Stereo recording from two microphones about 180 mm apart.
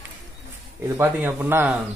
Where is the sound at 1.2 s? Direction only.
10° right (ahead or behind).